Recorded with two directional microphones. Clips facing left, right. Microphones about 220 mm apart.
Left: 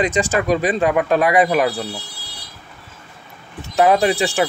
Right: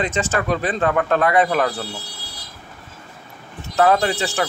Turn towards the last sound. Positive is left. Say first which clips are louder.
# left 4 dB
turn(degrees=15)  # may be behind; listen again after turning